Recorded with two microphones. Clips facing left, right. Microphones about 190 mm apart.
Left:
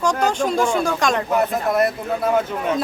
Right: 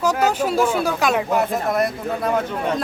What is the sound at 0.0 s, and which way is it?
Speech, 5° right (ahead or behind).